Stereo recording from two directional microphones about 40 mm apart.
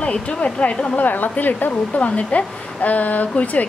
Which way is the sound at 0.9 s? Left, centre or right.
Left.